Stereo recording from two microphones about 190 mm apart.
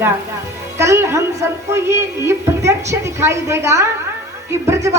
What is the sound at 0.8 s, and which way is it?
Speech, 15° right (ahead or behind).